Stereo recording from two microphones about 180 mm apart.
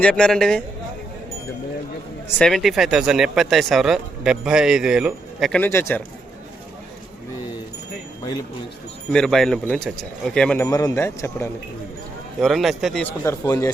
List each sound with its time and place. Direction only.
0.0 s speech: 5° left (ahead or behind)
2.4 s speech: centre (ahead or behind)
9.1 s speech: centre (ahead or behind)
10.7 s speech: 20° left (ahead or behind)
12.4 s speech: centre (ahead or behind)
13.2 s speech: 15° left (ahead or behind)